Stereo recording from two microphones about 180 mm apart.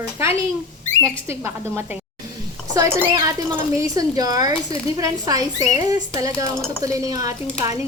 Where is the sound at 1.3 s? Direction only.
15° right (ahead or behind).